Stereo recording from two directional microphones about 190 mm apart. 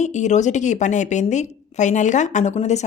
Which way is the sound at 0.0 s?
40° left (ahead or behind).